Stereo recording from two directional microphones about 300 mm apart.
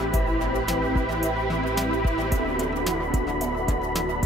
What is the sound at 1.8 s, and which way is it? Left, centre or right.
Music, centre.